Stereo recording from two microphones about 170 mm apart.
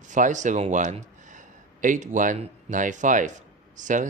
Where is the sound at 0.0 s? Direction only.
45° right (ahead or behind).